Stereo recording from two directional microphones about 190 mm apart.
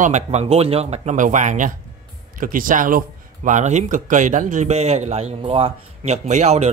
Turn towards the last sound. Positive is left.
turn(degrees=-35)  # may be behind; listen again after turning